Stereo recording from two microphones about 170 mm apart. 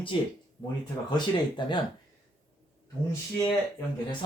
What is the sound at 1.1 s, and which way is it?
Speech, 25° left (ahead or behind).